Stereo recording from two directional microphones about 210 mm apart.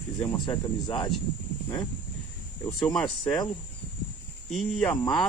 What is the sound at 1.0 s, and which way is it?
Speech, centre (ahead or behind).